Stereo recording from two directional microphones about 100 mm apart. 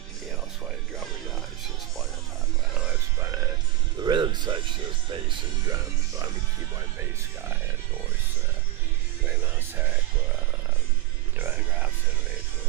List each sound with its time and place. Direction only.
4.0 s music: 50° right (ahead or behind)
5.0 s speech: 50° right (ahead or behind)